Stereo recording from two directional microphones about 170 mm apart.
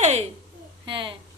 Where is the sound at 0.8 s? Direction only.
30° right (ahead or behind).